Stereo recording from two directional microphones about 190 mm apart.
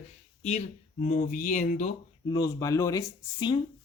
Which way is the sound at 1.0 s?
40° left (ahead or behind).